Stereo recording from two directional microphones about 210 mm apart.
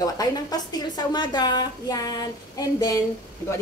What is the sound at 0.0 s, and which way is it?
A woman's voice, 20° left (ahead or behind).